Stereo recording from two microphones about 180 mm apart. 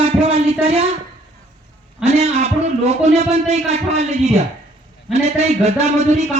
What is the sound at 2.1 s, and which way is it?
Speech, 35° right (ahead or behind).